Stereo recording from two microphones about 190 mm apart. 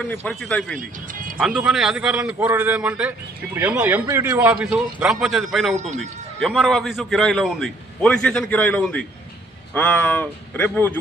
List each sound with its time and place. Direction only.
0.3 s a man's voice: 5° left (ahead or behind)
0.8 s music: 45° right (ahead or behind)
1.4 s a man's voice: 5° right (ahead or behind)